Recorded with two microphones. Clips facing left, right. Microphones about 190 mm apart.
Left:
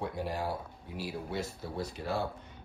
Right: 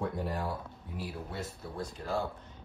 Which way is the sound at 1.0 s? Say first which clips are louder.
Left 3 dB; 80° left.